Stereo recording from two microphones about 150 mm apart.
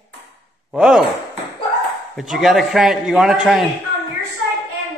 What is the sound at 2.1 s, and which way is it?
A man's voice, centre (ahead or behind).